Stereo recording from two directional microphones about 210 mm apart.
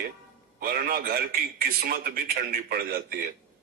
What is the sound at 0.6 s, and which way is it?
A man's voice, 45° right (ahead or behind).